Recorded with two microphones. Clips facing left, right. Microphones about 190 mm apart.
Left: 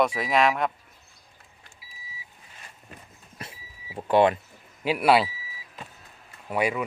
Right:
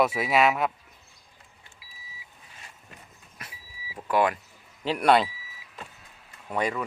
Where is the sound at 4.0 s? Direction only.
25° left (ahead or behind).